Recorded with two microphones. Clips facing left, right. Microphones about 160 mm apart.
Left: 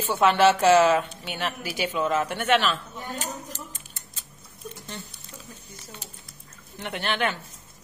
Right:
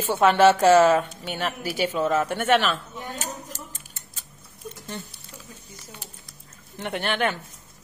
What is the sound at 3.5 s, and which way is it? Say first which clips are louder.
Tick-tock: even; 45° right (ahead or behind).